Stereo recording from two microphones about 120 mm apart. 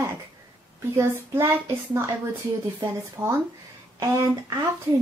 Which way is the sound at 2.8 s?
20° right (ahead or behind).